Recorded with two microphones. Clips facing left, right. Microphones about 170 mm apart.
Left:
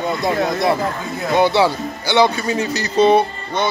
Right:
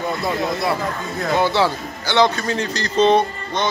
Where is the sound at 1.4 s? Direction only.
15° left (ahead or behind).